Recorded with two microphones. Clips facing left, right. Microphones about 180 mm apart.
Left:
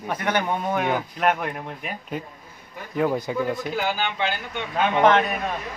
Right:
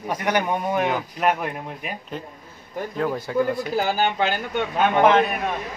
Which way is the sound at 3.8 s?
40° right (ahead or behind).